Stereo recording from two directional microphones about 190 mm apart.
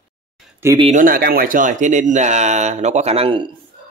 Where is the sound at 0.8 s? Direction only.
40° right (ahead or behind).